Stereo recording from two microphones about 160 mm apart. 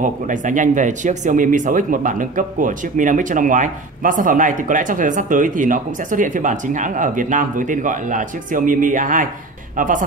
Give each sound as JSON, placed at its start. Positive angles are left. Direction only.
{"t": 0.0, "sound": "speech", "side_deg": -55}